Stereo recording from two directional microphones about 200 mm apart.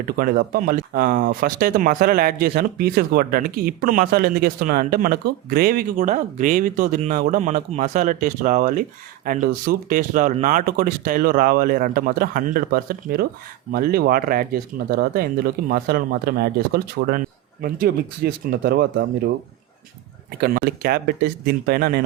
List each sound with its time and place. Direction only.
0.2 s speech: 45° right (ahead or behind)
20.4 s speech: 50° right (ahead or behind)